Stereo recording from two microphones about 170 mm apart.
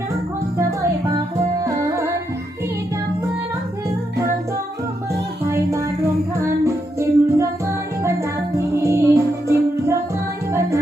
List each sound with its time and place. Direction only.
1.6 s music: 15° right (ahead or behind)
5.5 s music: 15° right (ahead or behind)